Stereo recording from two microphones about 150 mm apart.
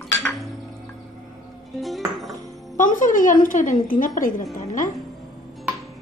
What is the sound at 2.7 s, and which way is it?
A woman's voice, 60° left (ahead or behind).